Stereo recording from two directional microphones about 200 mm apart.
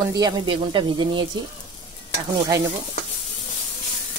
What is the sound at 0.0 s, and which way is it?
Speech, 20° right (ahead or behind).